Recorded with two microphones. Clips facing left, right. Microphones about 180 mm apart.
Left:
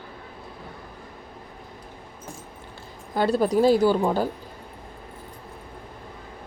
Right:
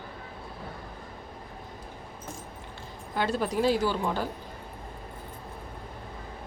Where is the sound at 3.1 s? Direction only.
35° left (ahead or behind).